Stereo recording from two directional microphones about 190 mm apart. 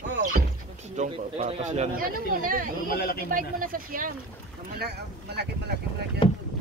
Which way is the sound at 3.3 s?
45° right (ahead or behind).